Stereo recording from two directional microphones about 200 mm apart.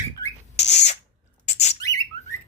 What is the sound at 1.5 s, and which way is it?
Bird, 30° left (ahead or behind).